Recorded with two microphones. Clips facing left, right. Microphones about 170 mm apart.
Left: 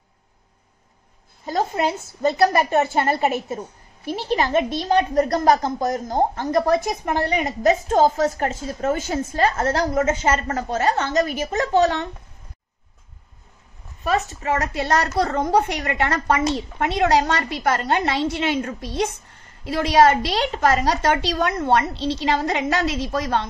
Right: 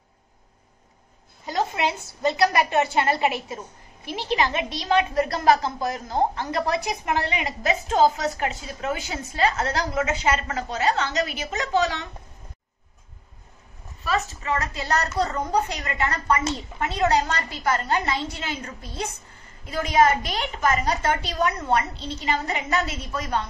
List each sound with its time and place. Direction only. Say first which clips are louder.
1.4 s a woman's voice: left 3 dB; 45° left (ahead or behind)
14.0 s a child's voice: left 4 dB; 55° left (ahead or behind); by 23.4 s 80° left